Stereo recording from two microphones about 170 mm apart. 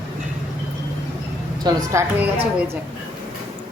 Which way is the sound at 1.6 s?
15° right (ahead or behind).